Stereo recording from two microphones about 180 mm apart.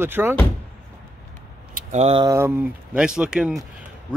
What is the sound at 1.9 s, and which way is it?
Speech, 35° right (ahead or behind).